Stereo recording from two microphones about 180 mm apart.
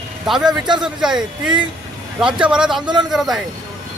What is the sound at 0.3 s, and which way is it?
Speech, centre (ahead or behind).